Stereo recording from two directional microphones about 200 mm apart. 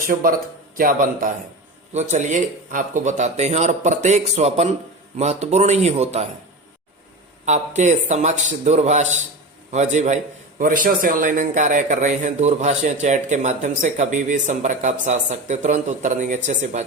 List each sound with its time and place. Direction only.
0.1 s a man's voice: 45° right (ahead or behind)
7.4 s a man's voice: 35° right (ahead or behind)